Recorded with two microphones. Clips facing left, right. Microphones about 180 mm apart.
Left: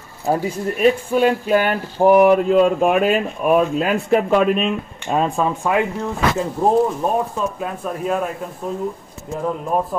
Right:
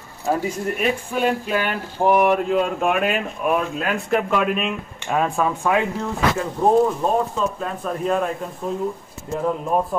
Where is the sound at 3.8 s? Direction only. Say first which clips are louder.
Left 4 dB; 35° left (ahead or behind).